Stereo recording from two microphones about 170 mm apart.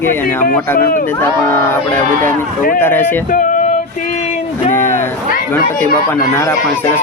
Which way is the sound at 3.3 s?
50° left (ahead or behind).